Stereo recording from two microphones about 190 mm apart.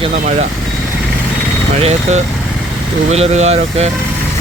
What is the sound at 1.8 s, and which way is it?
Speech, 35° right (ahead or behind).